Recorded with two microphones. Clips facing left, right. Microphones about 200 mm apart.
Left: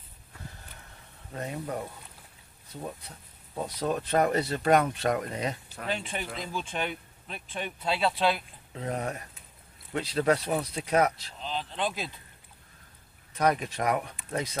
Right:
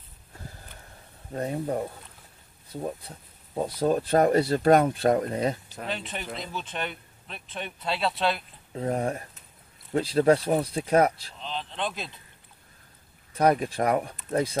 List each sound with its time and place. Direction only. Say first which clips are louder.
1.3 s speech: right 6 dB; 30° right (ahead or behind)
3.5 s speech: right 6 dB; 35° right (ahead or behind)
5.9 s speech: left 1 dB; centre (ahead or behind)
8.7 s speech: right 5 dB; 35° right (ahead or behind)
11.3 s speech: even; 5° left (ahead or behind)
13.3 s speech: right 4 dB; 30° right (ahead or behind)